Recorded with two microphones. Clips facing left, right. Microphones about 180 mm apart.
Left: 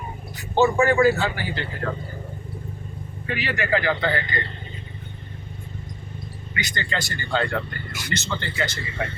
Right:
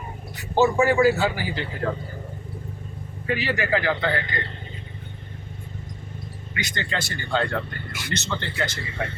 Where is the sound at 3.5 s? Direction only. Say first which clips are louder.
Left 2 dB; 5° right (ahead or behind).